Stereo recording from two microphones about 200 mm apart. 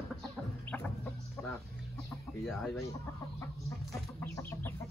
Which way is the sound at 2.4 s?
Centre (ahead or behind).